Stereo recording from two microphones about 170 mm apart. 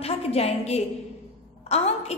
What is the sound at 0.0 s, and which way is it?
A woman's voice, 35° left (ahead or behind).